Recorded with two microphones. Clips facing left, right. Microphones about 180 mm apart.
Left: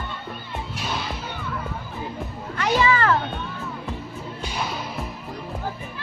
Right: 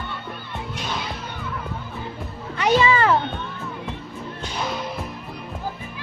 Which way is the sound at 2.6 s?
15° right (ahead or behind).